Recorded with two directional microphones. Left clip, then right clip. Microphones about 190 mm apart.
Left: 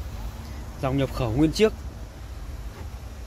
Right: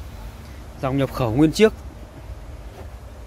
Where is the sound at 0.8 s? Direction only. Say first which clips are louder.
Right 4 dB; 20° right (ahead or behind).